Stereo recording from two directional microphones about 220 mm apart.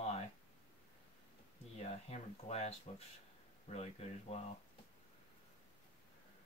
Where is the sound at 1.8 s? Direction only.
30° left (ahead or behind).